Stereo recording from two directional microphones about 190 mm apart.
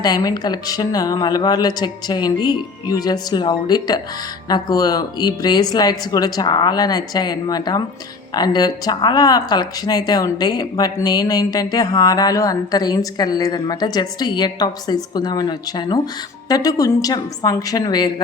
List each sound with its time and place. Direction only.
0.0 s speech: 20° left (ahead or behind)